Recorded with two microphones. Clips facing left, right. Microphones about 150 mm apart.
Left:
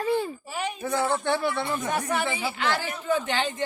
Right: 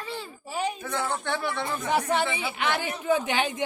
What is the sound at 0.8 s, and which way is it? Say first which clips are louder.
Speech: left 5 dB; 20° left (ahead or behind).